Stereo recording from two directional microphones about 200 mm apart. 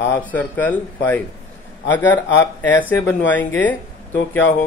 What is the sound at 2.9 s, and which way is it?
Speech, 10° left (ahead or behind).